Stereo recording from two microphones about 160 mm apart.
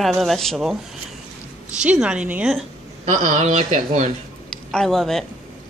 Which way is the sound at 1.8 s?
5° right (ahead or behind).